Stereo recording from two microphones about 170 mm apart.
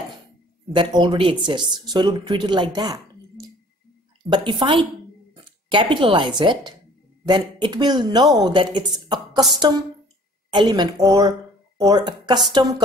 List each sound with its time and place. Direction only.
0.7 s speech: 30° right (ahead or behind)